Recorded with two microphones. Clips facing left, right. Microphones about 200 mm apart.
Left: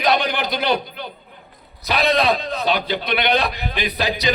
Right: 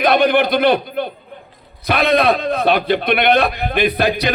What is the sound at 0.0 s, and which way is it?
A man's voice, 55° right (ahead or behind).